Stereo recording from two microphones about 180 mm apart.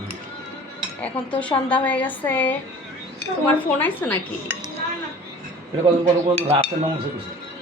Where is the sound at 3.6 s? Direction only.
10° left (ahead or behind).